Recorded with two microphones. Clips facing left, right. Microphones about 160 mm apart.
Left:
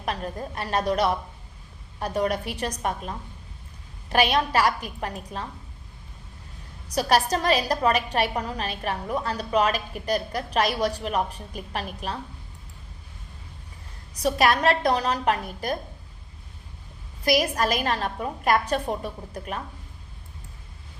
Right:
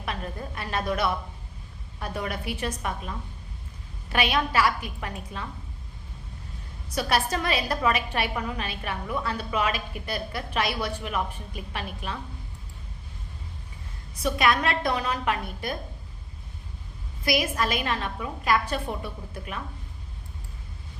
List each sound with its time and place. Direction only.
0.0 s a woman's voice: 40° left (ahead or behind)
6.8 s a woman's voice: 40° left (ahead or behind)
14.1 s a woman's voice: 40° left (ahead or behind)
17.2 s a woman's voice: 40° left (ahead or behind)